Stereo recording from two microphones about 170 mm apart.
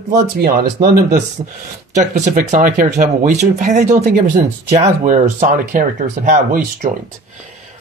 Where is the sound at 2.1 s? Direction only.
45° right (ahead or behind).